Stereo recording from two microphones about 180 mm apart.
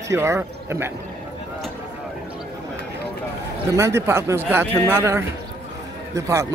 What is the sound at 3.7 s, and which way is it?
Speech, 15° right (ahead or behind).